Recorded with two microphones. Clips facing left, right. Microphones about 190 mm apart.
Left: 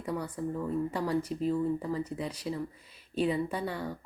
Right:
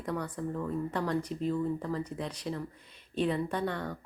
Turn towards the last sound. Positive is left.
turn(degrees=10)  # may be behind; listen again after turning